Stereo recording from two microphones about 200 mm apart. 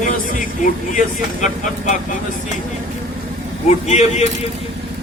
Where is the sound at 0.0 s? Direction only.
40° left (ahead or behind).